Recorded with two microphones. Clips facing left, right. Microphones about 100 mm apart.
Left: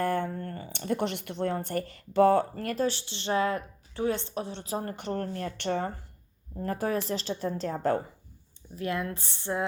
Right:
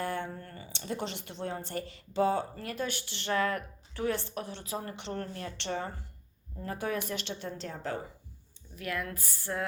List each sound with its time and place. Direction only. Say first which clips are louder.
0.0 s speech: left 6 dB; 50° left (ahead or behind)
2.7 s a woman's voice: left 7 dB; 30° left (ahead or behind)
4.6 s a woman's voice: left 5 dB; 40° left (ahead or behind)
8.7 s a woman's voice: left 5 dB; 30° left (ahead or behind)